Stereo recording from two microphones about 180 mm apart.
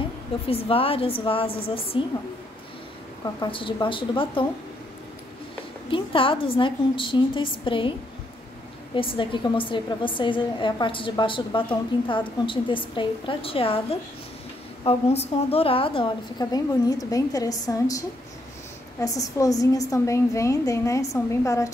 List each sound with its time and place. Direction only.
0.5 s speech: 30° left (ahead or behind)
3.3 s a woman's voice: 30° left (ahead or behind)
5.9 s a woman's voice: 30° left (ahead or behind)
8.9 s a woman's voice: 30° left (ahead or behind)